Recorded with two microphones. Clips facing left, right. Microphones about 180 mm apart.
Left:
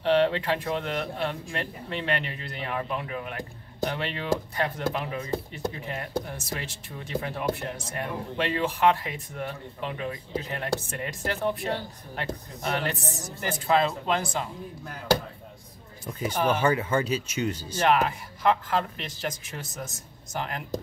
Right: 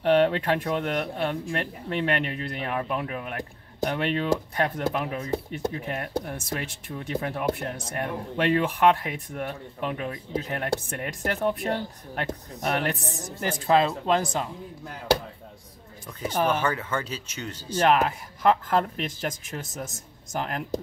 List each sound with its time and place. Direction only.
0.0 s speech: 55° right (ahead or behind)
16.1 s speech: 10° left (ahead or behind)
17.7 s speech: 45° right (ahead or behind)